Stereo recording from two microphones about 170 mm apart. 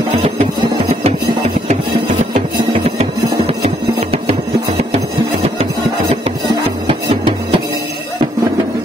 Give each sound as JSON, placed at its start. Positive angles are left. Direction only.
{"t": 0.1, "sound": "music", "side_deg": -40}
{"t": 6.9, "sound": "music", "side_deg": -30}